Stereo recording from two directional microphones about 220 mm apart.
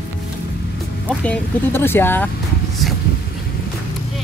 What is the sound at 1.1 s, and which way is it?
Speech, 10° left (ahead or behind).